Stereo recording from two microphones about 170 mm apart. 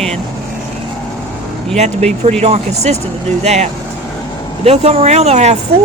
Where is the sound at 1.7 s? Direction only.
40° right (ahead or behind).